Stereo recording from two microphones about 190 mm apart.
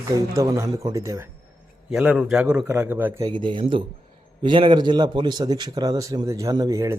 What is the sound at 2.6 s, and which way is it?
Speech, 15° right (ahead or behind).